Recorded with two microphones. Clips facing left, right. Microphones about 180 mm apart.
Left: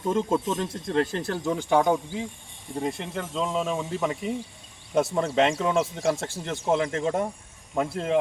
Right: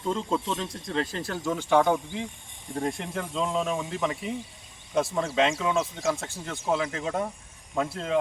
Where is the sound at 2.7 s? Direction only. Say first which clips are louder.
Left 1 dB; centre (ahead or behind).